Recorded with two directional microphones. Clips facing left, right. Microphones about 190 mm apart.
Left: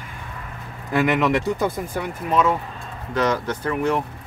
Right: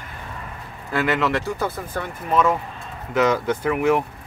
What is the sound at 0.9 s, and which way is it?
Speech, 15° left (ahead or behind).